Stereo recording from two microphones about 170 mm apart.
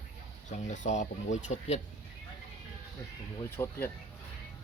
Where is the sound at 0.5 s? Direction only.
45° left (ahead or behind).